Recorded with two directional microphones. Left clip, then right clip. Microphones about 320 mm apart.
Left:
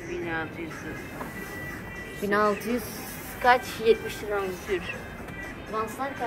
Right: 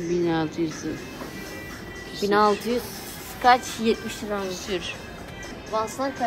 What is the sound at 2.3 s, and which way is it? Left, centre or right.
A woman's voice, right.